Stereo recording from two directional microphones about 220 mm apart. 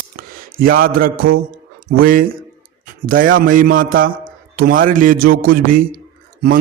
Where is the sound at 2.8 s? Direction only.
40° right (ahead or behind).